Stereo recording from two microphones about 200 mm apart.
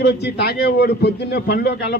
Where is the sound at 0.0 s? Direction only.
55° left (ahead or behind).